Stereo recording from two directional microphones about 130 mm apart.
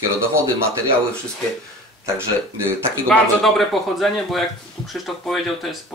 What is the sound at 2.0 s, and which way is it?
Speech, 20° right (ahead or behind).